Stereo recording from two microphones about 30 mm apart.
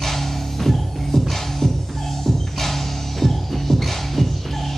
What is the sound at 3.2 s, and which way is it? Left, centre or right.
Music, centre.